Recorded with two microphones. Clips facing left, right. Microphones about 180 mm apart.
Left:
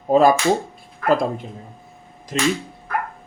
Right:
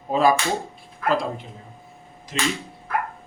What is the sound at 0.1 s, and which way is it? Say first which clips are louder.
Speech: left 5 dB; 45° left (ahead or behind).